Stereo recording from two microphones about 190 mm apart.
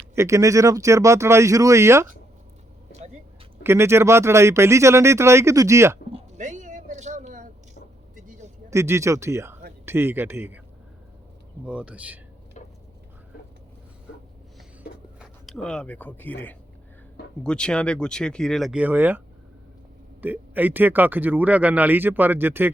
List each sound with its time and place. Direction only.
0.2 s speech: 15° right (ahead or behind)
3.6 s speech: 15° right (ahead or behind)
6.1 s a sound: 35° right (ahead or behind)
8.1 s vehicle: 45° right (ahead or behind)
8.7 s speech: 15° right (ahead or behind)
11.6 s speech: 5° right (ahead or behind)
12.6 s a sound: 40° left (ahead or behind)
15.2 s speech: centre (ahead or behind)
20.2 s speech: 10° right (ahead or behind)